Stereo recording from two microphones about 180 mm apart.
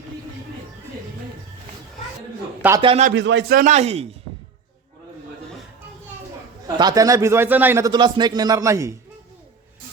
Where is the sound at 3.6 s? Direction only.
40° right (ahead or behind).